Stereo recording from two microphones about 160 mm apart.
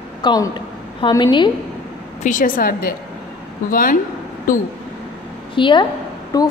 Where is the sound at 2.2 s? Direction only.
55° left (ahead or behind).